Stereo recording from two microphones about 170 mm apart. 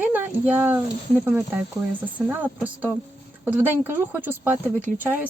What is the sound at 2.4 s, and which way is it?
Speech, 10° right (ahead or behind).